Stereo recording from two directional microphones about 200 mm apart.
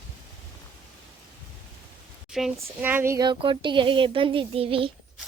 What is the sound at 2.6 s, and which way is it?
Speech, 10° right (ahead or behind).